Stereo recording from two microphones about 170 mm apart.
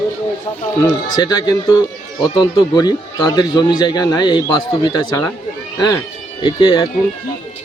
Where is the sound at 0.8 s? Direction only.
25° left (ahead or behind).